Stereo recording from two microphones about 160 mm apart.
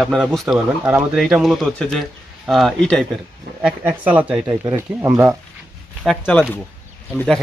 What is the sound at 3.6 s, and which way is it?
Speech, 10° right (ahead or behind).